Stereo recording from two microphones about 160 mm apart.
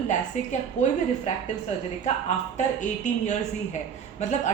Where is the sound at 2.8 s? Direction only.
50° left (ahead or behind).